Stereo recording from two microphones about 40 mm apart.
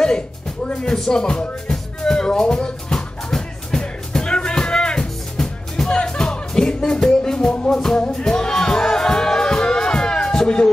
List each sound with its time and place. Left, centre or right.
0.8 s speech: centre
1.7 s music: centre
7.7 s speech: centre
8.2 s music: centre